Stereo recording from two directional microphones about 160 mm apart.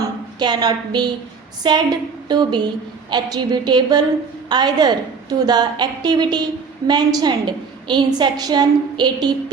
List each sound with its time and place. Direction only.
0.3 s a woman's voice: 25° right (ahead or behind)